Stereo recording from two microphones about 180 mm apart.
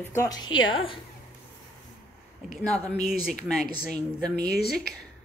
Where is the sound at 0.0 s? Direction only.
15° left (ahead or behind).